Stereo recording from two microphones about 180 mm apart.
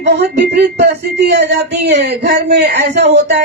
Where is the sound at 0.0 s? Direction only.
65° right (ahead or behind).